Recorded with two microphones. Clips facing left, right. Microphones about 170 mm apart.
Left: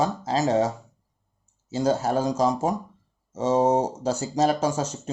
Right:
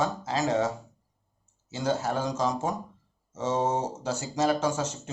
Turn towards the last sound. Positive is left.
turn(degrees=35)  # may be behind; listen again after turning